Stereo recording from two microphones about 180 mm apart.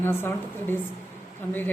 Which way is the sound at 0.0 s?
10° left (ahead or behind).